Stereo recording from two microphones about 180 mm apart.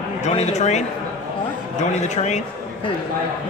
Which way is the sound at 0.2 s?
35° left (ahead or behind).